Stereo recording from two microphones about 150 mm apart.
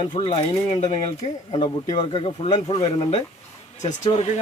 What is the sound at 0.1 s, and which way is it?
Speech, 35° left (ahead or behind).